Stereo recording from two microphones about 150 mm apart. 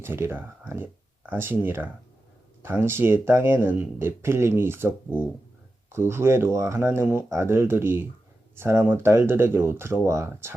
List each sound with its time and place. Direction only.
0.0 s speech: 15° right (ahead or behind)
5.9 s speech: 15° right (ahead or behind)